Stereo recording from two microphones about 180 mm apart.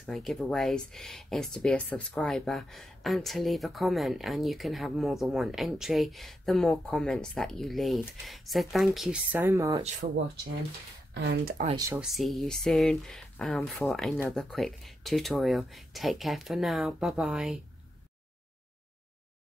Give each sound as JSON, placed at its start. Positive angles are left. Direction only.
{"t": 0.0, "sound": "speech", "side_deg": 0}
{"t": 11.1, "sound": "speech", "side_deg": -55}
{"t": 11.9, "sound": "speech", "side_deg": -5}